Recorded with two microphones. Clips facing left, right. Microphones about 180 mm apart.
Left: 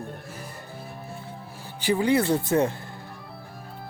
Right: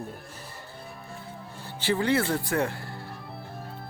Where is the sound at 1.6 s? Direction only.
15° left (ahead or behind).